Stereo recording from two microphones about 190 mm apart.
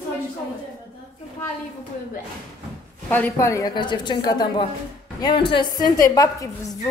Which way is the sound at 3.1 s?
10° left (ahead or behind).